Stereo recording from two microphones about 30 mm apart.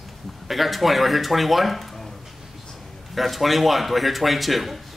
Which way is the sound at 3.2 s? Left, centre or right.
Centre.